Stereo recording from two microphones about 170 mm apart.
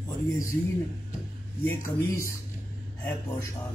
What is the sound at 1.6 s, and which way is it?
Speech, 15° left (ahead or behind).